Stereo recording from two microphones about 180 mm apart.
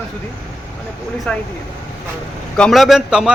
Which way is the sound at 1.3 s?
5° left (ahead or behind).